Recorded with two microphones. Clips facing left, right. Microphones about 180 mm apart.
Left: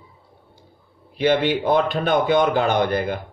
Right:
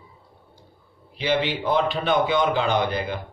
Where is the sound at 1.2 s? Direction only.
55° left (ahead or behind).